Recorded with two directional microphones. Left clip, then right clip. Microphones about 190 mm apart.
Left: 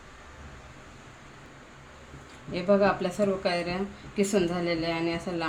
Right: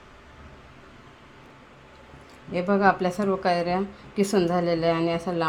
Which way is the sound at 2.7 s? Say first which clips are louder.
Right 2 dB; 40° right (ahead or behind).